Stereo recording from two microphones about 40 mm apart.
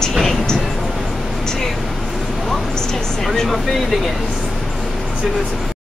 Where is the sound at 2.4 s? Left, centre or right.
Centre.